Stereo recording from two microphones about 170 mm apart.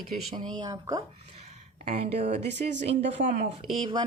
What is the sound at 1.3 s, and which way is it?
Speech, 40° right (ahead or behind).